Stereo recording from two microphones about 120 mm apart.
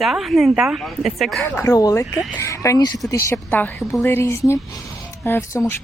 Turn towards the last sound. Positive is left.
turn(degrees=20)  # may be behind; listen again after turning